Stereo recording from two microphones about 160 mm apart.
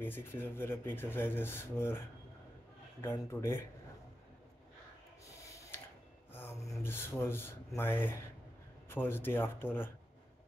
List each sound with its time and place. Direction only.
0.0 s speech: 15° left (ahead or behind)
6.3 s speech: 15° left (ahead or behind)